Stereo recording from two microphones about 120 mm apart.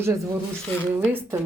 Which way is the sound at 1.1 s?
15° right (ahead or behind).